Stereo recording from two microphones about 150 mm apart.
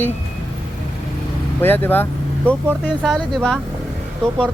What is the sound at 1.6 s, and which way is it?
Speech, 15° left (ahead or behind).